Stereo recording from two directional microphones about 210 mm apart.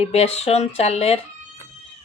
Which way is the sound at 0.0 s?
30° left (ahead or behind).